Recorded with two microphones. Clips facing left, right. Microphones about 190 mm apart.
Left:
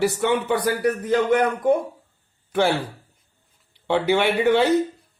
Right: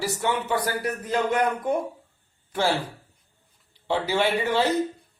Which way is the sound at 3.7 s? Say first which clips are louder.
Left 5 dB; 60° left (ahead or behind).